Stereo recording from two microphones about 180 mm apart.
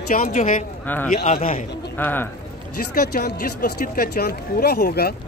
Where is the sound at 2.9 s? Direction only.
60° left (ahead or behind).